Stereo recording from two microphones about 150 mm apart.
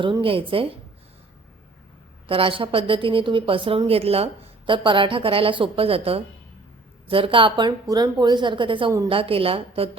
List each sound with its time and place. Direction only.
0.0 s a woman's voice: 35° right (ahead or behind)
2.2 s a woman's voice: 35° right (ahead or behind)